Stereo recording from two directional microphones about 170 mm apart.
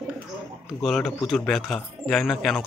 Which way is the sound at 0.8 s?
Centre (ahead or behind).